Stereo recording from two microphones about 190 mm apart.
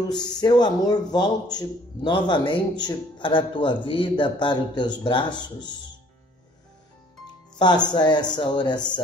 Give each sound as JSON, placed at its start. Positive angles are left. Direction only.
{"t": 0.4, "sound": "speech", "side_deg": 20}
{"t": 7.5, "sound": "speech", "side_deg": 20}